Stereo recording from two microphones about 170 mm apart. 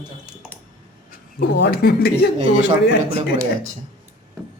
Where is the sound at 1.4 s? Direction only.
90° left; by 2.1 s 70° left (ahead or behind).